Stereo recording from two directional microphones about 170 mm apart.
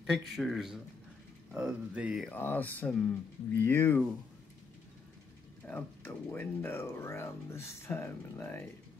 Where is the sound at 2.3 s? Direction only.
10° left (ahead or behind).